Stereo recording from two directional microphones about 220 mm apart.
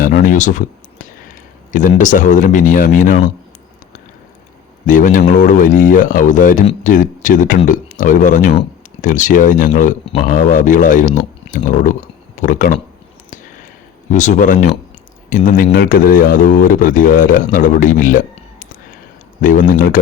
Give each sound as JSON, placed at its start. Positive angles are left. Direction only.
{"t": 0.0, "sound": "speech", "side_deg": 40}
{"t": 4.9, "sound": "speech", "side_deg": 35}
{"t": 14.1, "sound": "speech", "side_deg": 35}